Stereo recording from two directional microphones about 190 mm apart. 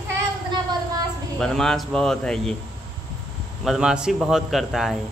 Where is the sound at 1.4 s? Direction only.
5° left (ahead or behind).